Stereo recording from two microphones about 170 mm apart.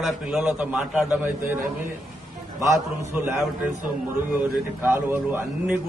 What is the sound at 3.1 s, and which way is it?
Speech, 10° right (ahead or behind).